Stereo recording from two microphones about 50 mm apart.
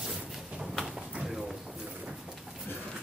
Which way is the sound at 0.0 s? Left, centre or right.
Centre.